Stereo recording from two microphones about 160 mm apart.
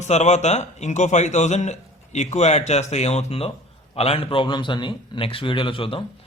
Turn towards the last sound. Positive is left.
turn(degrees=35)  # may be behind; listen again after turning